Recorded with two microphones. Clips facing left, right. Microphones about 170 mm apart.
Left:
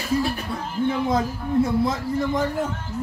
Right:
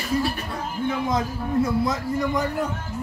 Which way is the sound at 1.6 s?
25° left (ahead or behind).